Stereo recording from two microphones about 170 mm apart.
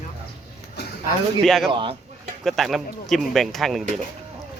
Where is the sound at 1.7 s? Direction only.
30° right (ahead or behind).